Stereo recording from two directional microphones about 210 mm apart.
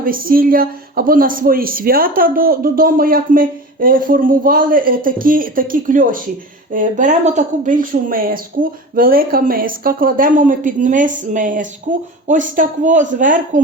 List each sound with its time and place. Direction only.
0.0 s speech: 45° right (ahead or behind)